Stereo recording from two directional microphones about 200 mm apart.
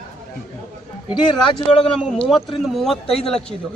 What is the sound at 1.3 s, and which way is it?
Speech, 25° left (ahead or behind).